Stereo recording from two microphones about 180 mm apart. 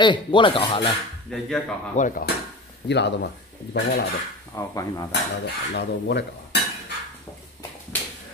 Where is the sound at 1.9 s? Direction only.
45° left (ahead or behind).